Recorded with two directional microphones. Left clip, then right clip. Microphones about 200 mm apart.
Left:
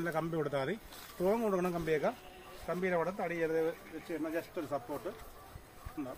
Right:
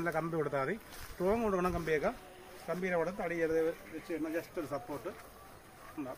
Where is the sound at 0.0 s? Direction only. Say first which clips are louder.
Right 1 dB; 55° left (ahead or behind).